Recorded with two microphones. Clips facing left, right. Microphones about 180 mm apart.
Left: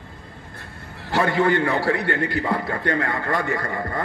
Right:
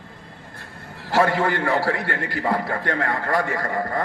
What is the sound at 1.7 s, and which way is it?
A man's voice, 25° left (ahead or behind).